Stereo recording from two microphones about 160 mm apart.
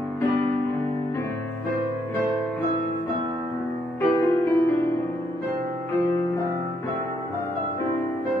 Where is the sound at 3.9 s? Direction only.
15° left (ahead or behind).